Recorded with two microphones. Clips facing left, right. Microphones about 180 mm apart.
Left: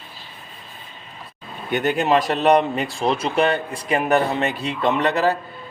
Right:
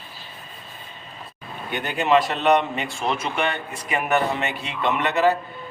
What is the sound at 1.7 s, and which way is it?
Speech, 45° left (ahead or behind).